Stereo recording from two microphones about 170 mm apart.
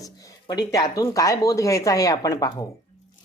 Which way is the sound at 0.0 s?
20° left (ahead or behind).